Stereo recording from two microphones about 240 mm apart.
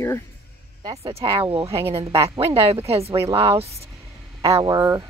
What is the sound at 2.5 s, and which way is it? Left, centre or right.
Speech, right.